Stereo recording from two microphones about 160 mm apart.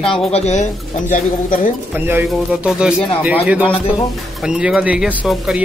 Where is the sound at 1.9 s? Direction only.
10° right (ahead or behind).